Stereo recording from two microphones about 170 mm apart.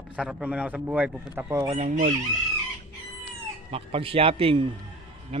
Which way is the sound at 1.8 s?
50° right (ahead or behind).